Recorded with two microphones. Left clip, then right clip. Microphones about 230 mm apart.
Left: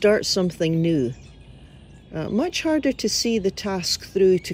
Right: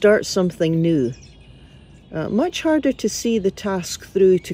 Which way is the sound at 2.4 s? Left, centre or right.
Centre.